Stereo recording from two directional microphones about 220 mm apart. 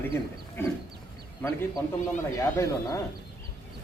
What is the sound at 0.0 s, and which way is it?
A man's voice, 10° left (ahead or behind).